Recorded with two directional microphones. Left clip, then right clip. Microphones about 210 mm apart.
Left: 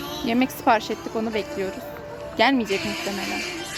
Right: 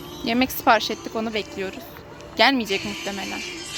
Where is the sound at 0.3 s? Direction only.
10° right (ahead or behind).